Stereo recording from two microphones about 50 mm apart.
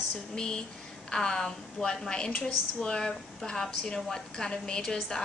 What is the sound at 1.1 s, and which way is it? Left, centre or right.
A woman's voice, centre.